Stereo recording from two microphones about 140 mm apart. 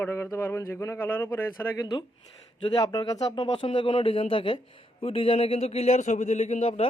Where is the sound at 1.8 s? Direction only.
35° left (ahead or behind); by 6.9 s 50° left (ahead or behind).